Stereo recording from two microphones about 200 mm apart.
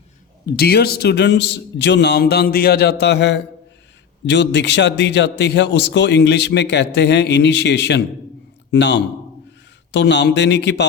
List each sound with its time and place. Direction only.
0.4 s a man's voice: 55° left (ahead or behind)